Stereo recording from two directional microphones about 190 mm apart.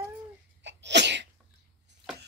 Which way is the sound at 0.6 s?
70° right (ahead or behind).